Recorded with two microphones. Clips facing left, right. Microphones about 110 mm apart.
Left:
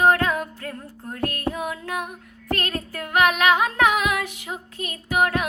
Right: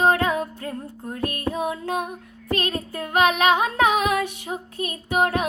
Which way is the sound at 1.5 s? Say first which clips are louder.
Right 3 dB; 25° right (ahead or behind).